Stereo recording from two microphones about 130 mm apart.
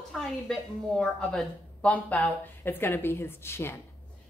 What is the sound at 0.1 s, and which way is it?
A woman's voice, 5° left (ahead or behind).